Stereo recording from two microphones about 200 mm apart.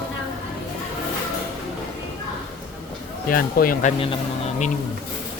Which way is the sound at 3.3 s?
45° left (ahead or behind).